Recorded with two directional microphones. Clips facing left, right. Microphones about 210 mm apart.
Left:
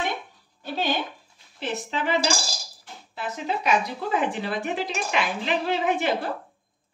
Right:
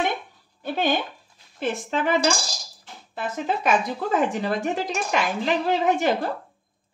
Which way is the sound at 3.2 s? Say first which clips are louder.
Right 3 dB; 50° right (ahead or behind).